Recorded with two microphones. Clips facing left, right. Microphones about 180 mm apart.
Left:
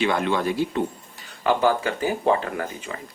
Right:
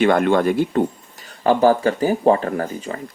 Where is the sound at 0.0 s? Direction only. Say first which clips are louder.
Right 7 dB; 50° right (ahead or behind).